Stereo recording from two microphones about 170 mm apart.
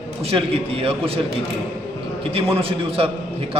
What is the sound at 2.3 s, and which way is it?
Speech, 35° right (ahead or behind).